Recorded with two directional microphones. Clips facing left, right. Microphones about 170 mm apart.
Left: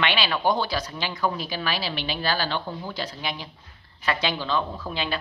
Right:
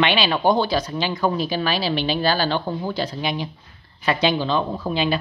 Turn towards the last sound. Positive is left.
turn(degrees=-15)  # may be behind; listen again after turning